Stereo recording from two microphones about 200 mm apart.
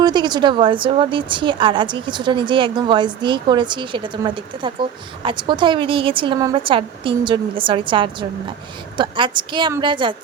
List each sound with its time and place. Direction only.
0.0 s a woman's voice: 20° right (ahead or behind)